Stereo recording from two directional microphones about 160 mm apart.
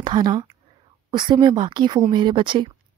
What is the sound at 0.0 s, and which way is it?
A woman's voice, 25° right (ahead or behind).